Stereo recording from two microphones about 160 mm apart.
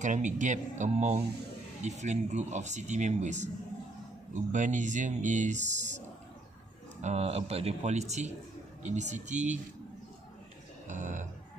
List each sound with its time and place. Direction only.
0.0 s speech: 50° right (ahead or behind)
10.9 s speech: 50° right (ahead or behind)